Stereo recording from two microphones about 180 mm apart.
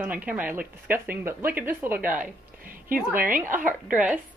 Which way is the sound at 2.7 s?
50° right (ahead or behind).